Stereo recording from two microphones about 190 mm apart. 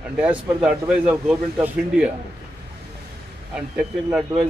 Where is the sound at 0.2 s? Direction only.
5° right (ahead or behind).